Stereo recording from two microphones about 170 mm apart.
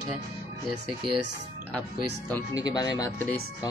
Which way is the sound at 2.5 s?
20° left (ahead or behind).